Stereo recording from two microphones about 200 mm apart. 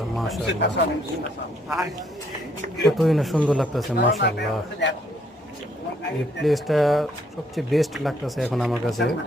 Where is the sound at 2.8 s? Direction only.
Centre (ahead or behind).